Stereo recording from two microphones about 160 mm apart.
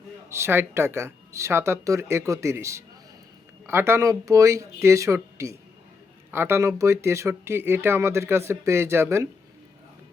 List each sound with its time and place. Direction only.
0.3 s speech: 15° right (ahead or behind)